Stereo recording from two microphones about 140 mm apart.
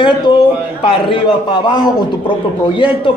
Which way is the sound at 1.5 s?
35° left (ahead or behind).